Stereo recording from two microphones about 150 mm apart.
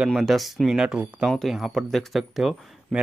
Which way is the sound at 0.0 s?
Centre (ahead or behind).